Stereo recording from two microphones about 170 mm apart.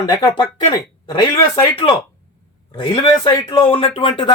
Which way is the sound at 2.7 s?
30° left (ahead or behind).